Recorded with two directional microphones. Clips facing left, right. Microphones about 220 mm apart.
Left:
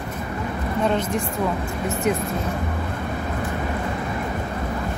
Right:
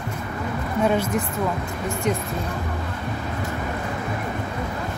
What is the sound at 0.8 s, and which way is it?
Speech, 10° right (ahead or behind).